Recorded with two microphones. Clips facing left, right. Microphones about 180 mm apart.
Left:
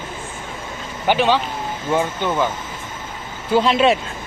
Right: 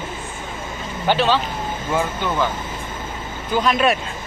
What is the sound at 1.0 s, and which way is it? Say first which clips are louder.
Speech: left 1 dB; 15° left (ahead or behind).